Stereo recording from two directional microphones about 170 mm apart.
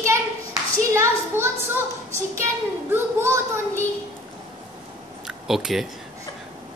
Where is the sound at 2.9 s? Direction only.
15° right (ahead or behind).